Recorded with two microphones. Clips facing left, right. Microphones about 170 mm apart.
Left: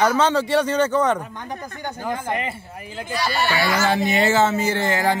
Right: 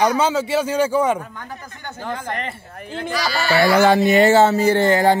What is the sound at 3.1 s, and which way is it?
Speech, 90° right.